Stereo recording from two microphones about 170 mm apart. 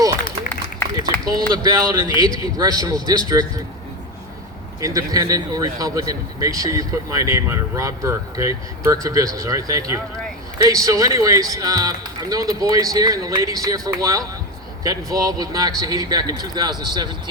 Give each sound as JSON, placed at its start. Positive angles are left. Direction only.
{"t": 1.3, "sound": "speech", "side_deg": -20}
{"t": 4.8, "sound": "speech", "side_deg": -20}